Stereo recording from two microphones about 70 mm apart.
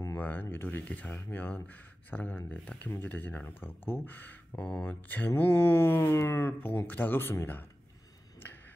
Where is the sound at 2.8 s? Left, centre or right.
Left.